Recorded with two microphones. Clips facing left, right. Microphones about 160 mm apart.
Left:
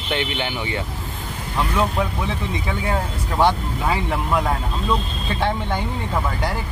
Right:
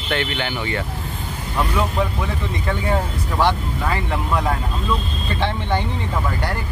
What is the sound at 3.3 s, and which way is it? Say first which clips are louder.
Speech: left 1 dB; 15° left (ahead or behind).